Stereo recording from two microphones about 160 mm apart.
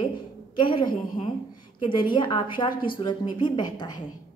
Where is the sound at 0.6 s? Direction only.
30° left (ahead or behind).